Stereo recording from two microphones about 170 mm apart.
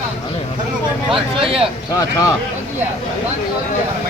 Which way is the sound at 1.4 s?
30° right (ahead or behind).